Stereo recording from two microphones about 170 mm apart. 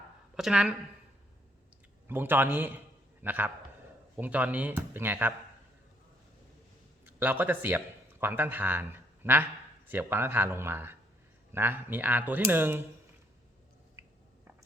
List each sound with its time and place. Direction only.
0.3 s speech: 5° right (ahead or behind)
2.0 s speech: 10° right (ahead or behind)
7.0 s a man's voice: 10° right (ahead or behind)
14.0 s squish: 15° right (ahead or behind)